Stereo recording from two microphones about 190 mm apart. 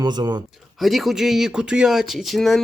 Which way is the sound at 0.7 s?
Centre (ahead or behind).